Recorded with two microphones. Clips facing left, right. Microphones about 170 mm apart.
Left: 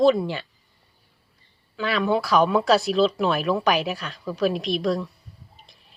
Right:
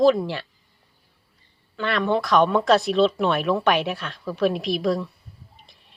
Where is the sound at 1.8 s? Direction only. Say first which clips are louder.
Even; 5° left (ahead or behind).